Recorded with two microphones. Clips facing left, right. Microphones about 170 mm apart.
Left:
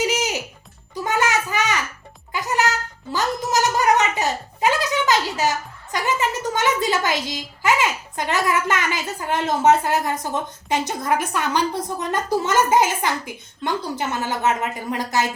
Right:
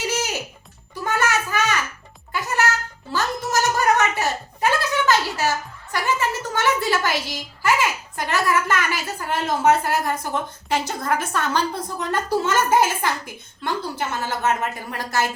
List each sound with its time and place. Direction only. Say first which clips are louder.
0.0 s music: left 3 dB; 15° left (ahead or behind)
1.0 s a sound: left 1 dB; 15° left (ahead or behind)
12.5 s a child's voice: left 2 dB; 15° left (ahead or behind)